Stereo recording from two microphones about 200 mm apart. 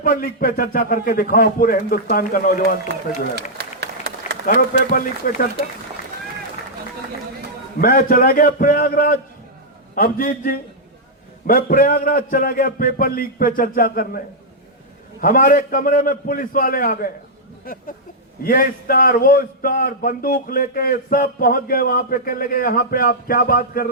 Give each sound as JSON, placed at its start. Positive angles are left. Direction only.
{"t": 0.0, "sound": "a man's voice", "side_deg": 45}
{"t": 3.6, "sound": "applause", "side_deg": -55}
{"t": 4.4, "sound": "a man's voice", "side_deg": 45}
{"t": 7.8, "sound": "a man's voice", "side_deg": 45}
{"t": 15.2, "sound": "a man's voice", "side_deg": 40}